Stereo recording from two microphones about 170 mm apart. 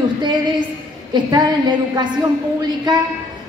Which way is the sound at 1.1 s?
25° right (ahead or behind).